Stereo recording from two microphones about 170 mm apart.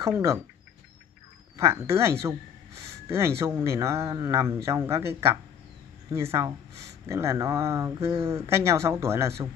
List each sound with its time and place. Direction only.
1.6 s speech: 15° right (ahead or behind)